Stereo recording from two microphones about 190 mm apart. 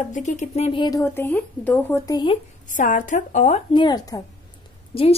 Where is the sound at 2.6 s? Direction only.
45° left (ahead or behind).